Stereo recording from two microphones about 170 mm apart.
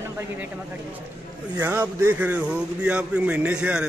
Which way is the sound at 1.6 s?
15° right (ahead or behind).